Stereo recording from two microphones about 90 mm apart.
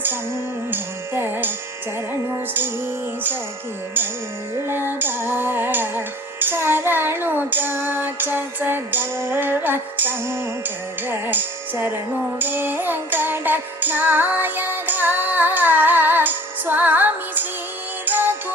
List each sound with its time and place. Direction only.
0.7 s music: 25° right (ahead or behind)
4.7 s music: 25° right (ahead or behind)